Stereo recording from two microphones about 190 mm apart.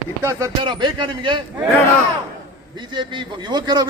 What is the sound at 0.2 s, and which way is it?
A man's voice, 15° right (ahead or behind).